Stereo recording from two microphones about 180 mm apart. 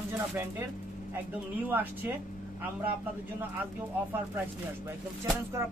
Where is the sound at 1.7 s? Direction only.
10° right (ahead or behind).